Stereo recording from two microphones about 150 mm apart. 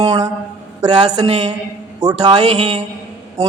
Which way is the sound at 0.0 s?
25° right (ahead or behind).